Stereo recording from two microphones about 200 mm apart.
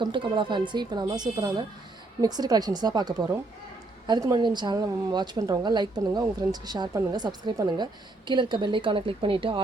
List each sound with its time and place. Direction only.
0.0 s a woman's voice: 25° right (ahead or behind)